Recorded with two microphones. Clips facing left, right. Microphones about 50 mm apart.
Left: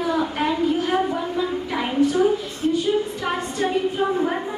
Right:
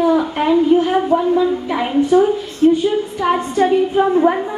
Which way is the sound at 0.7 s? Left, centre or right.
Right.